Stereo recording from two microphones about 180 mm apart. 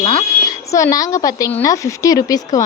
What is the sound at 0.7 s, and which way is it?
A woman's voice, 20° left (ahead or behind).